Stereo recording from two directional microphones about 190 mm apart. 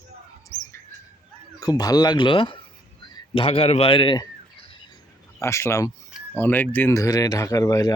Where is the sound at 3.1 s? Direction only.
25° left (ahead or behind).